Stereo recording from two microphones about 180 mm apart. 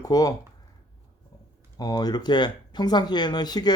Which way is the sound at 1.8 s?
20° left (ahead or behind).